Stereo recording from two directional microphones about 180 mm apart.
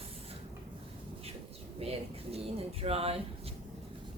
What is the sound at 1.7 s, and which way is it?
Speech, 35° right (ahead or behind).